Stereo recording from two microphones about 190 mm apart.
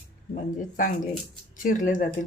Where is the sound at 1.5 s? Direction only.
45° left (ahead or behind).